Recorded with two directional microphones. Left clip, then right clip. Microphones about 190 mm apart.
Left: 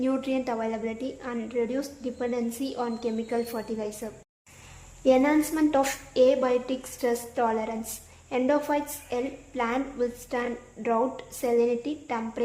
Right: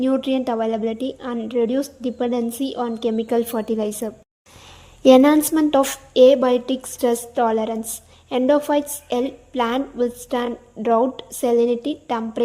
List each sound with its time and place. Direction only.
0.0 s a woman's voice: 35° right (ahead or behind)
5.0 s a woman's voice: 50° right (ahead or behind)